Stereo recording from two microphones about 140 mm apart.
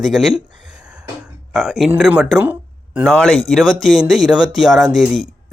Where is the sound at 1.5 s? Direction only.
Centre (ahead or behind).